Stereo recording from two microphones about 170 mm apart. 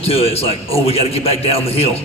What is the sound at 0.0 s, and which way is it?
A man's voice, 35° left (ahead or behind).